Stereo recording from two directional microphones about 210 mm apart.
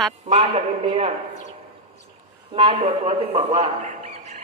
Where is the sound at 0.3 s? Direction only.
30° right (ahead or behind).